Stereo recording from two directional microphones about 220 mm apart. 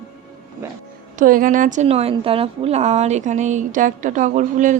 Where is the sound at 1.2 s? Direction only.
40° right (ahead or behind).